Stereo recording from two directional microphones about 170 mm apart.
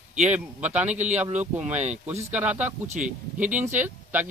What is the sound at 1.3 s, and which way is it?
Speech, 10° right (ahead or behind).